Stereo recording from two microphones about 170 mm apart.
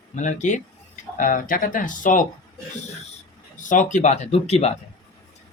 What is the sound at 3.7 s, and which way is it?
Speech, 50° left (ahead or behind).